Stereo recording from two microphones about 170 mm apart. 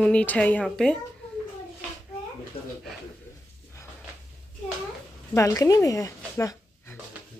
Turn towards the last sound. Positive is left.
turn(degrees=15)  # may be behind; listen again after turning